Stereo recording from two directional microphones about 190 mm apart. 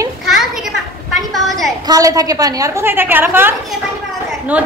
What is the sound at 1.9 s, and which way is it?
A woman's voice, 20° right (ahead or behind).